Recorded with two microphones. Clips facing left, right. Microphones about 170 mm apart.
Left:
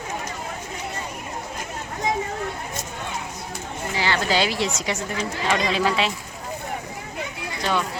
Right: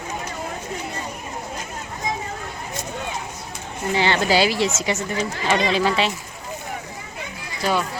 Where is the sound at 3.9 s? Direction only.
25° right (ahead or behind).